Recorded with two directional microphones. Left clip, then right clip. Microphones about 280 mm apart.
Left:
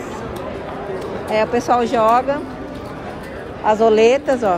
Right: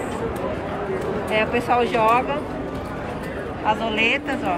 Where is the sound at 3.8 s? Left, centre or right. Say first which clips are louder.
Left 8 dB; centre.